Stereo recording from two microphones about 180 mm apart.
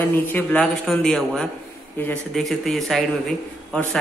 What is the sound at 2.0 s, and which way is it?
A man's voice, 5° left (ahead or behind).